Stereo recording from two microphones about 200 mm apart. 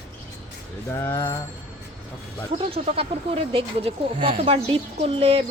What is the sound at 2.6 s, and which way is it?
Speech, 30° right (ahead or behind).